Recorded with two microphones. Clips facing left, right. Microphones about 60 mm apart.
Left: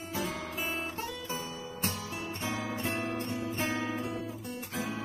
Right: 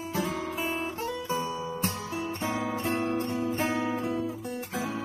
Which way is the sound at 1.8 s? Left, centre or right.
Right.